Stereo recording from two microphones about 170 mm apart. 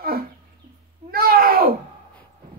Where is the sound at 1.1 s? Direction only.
60° right (ahead or behind).